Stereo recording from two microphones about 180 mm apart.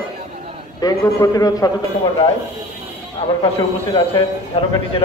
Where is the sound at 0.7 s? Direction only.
20° left (ahead or behind).